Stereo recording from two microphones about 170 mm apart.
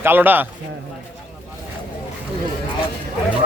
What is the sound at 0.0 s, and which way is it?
Speech, 10° right (ahead or behind).